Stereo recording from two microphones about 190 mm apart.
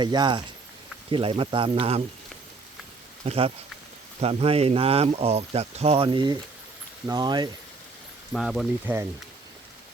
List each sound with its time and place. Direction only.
0.0 s speech: 25° right (ahead or behind)
3.2 s speech: 30° right (ahead or behind)
8.3 s speech: centre (ahead or behind)